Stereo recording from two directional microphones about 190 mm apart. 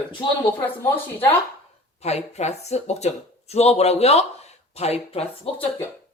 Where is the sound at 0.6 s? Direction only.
10° left (ahead or behind).